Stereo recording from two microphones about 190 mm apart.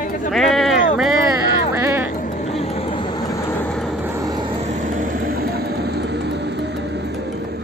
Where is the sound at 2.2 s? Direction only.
40° left (ahead or behind); by 3.6 s 20° left (ahead or behind).